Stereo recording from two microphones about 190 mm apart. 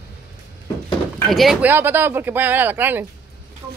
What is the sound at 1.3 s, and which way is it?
Speech, centre (ahead or behind).